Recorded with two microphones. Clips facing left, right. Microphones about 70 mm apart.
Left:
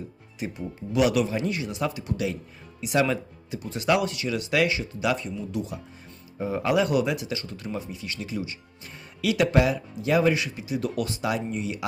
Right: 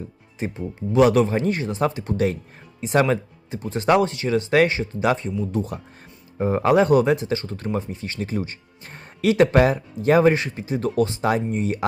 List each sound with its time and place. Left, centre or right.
0.3 s speech: right